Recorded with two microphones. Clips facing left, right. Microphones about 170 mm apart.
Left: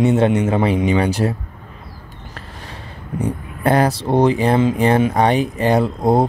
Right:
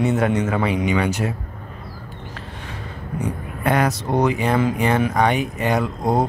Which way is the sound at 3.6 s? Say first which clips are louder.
Left 4 dB; 35° left (ahead or behind).